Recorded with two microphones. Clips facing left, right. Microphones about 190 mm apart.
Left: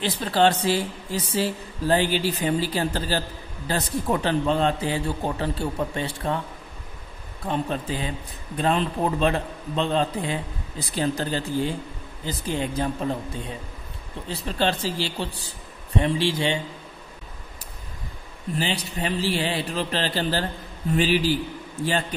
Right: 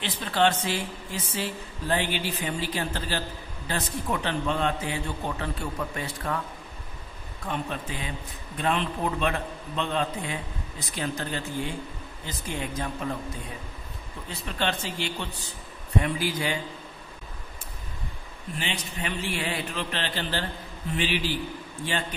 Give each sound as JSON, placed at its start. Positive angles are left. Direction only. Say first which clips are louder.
{"t": 0.0, "sound": "speech", "louder": "left 4 dB", "side_deg": 35}
{"t": 7.4, "sound": "speech", "louder": "left 5 dB", "side_deg": 30}
{"t": 14.3, "sound": "speech", "louder": "left 5 dB", "side_deg": 35}
{"t": 18.5, "sound": "speech", "louder": "left 6 dB", "side_deg": 35}